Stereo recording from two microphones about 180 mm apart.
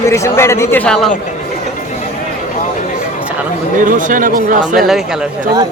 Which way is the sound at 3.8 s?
45° right (ahead or behind).